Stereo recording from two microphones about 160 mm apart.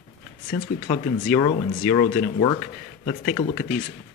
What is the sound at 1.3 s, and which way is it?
Speech, 25° left (ahead or behind).